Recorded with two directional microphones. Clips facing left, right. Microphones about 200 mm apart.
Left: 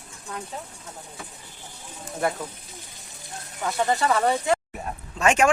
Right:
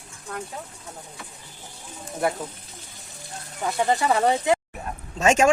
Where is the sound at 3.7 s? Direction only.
15° right (ahead or behind).